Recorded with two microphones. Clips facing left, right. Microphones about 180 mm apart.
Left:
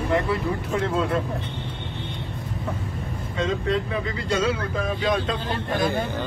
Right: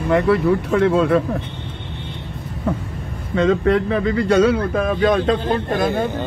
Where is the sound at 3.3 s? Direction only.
65° right (ahead or behind).